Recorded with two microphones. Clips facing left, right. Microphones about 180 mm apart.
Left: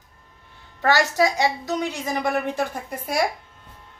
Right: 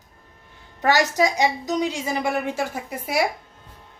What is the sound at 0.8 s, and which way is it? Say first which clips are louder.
A woman's voice: even; 20° right (ahead or behind).